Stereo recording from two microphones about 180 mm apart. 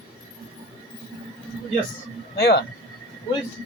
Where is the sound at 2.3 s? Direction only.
60° left (ahead or behind).